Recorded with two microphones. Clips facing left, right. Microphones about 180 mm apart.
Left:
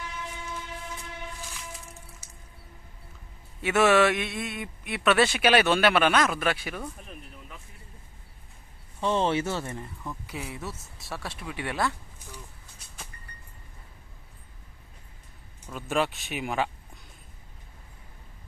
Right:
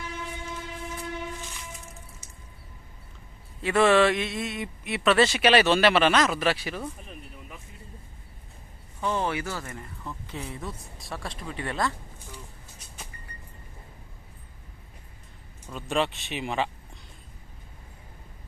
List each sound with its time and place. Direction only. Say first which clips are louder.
3.6 s speech: right 1 dB; 5° left (ahead or behind)
9.0 s speech: left 3 dB; 25° left (ahead or behind)
10.0 s speech: even; 10° left (ahead or behind)
15.7 s speech: even; centre (ahead or behind)